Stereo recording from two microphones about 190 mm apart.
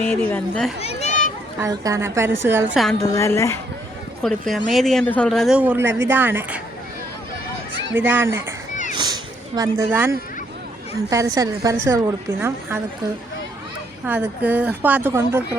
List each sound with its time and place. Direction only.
0.0 s speech: 10° left (ahead or behind)
0.8 s a sound: 35° left (ahead or behind)
1.6 s a woman's voice: 15° right (ahead or behind)
3.0 s speech: 15° left (ahead or behind)
4.2 s a woman's voice: centre (ahead or behind)
7.7 s a sound: 25° left (ahead or behind)
7.9 s a woman's voice: 10° right (ahead or behind)
9.0 s a sound: 20° right (ahead or behind)
10.9 s a woman's voice: 15° right (ahead or behind)
14.0 s a woman's voice: 10° right (ahead or behind)